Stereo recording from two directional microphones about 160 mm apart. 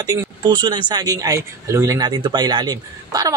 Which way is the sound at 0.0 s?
25° right (ahead or behind).